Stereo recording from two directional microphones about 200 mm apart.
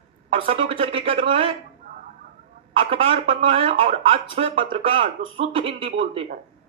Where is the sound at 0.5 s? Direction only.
30° right (ahead or behind).